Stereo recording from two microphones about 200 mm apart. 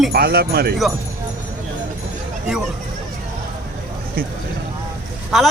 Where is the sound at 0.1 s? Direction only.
50° right (ahead or behind).